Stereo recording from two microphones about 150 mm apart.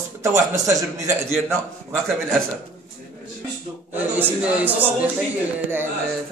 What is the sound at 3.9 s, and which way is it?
A man's voice, 10° right (ahead or behind).